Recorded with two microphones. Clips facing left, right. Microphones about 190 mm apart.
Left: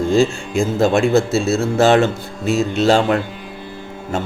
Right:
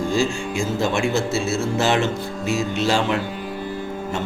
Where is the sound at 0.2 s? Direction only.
55° left (ahead or behind).